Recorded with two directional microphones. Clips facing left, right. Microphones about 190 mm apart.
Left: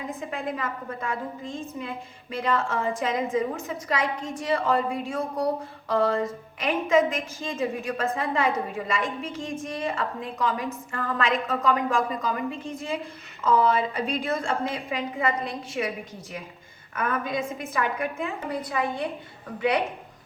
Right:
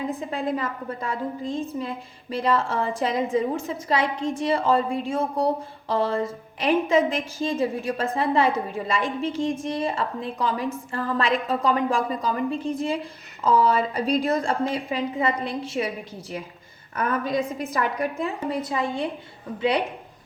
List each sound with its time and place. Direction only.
0.2 s a woman's voice: 35° right (ahead or behind)
16.9 s a woman's voice: 35° right (ahead or behind)